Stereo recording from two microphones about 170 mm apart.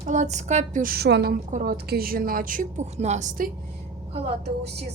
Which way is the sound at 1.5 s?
50° right (ahead or behind).